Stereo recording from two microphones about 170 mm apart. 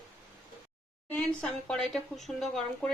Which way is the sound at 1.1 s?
5° left (ahead or behind).